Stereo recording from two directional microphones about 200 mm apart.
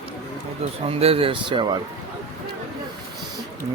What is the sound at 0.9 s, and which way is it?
Speech, 30° right (ahead or behind).